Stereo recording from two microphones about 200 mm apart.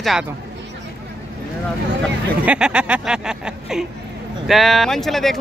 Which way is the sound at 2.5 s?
5° right (ahead or behind).